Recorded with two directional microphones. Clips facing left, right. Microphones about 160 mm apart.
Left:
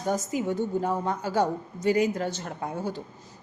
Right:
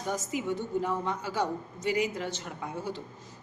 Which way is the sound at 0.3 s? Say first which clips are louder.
Left 4 dB; 40° left (ahead or behind).